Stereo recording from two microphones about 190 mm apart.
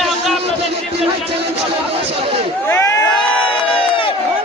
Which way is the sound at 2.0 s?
30° right (ahead or behind).